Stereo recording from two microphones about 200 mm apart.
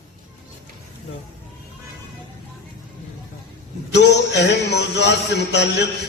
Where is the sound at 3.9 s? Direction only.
60° left (ahead or behind).